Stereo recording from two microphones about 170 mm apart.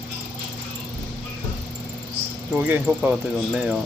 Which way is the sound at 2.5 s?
10° right (ahead or behind).